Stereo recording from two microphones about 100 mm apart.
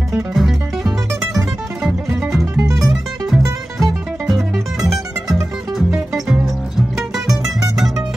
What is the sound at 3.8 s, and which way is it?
Music, centre (ahead or behind).